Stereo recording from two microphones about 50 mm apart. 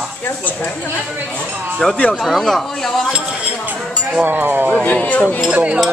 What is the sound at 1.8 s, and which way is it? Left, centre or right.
Speech, centre.